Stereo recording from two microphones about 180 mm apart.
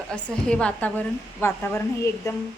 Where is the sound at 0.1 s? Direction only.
5° left (ahead or behind).